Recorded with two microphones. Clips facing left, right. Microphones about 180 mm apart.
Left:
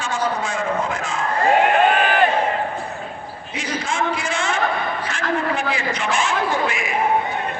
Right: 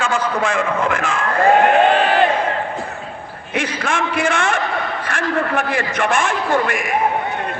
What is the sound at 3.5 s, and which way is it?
A man's voice, 60° right (ahead or behind).